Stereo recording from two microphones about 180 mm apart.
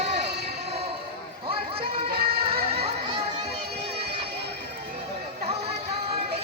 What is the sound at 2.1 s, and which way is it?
Music, 60° right (ahead or behind).